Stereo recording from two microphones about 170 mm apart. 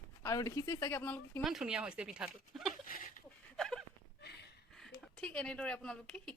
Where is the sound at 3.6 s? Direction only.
5° left (ahead or behind).